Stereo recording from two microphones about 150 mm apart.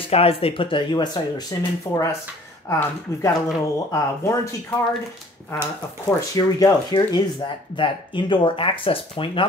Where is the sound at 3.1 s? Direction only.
20° left (ahead or behind).